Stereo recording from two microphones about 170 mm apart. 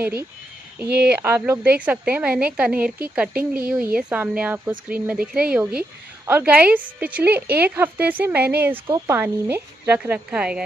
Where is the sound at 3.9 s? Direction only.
10° right (ahead or behind).